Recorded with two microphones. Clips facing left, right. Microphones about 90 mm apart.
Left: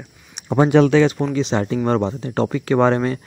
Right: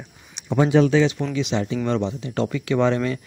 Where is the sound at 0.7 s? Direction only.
65° left (ahead or behind).